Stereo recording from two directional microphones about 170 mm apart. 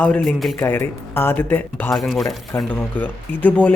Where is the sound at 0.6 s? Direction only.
15° left (ahead or behind).